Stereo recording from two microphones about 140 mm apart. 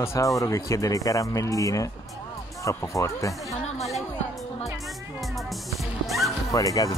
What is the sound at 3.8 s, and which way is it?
Music, centre (ahead or behind).